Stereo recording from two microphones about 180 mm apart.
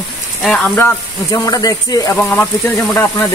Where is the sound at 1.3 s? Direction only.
20° left (ahead or behind).